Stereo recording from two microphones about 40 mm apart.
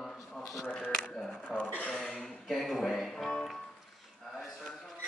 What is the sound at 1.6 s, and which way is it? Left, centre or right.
Speech, left.